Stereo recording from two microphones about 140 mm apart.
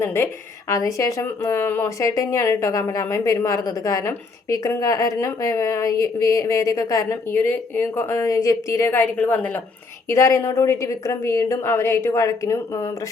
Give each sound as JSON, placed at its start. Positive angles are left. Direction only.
{"t": 0.0, "sound": "a woman's voice", "side_deg": 15}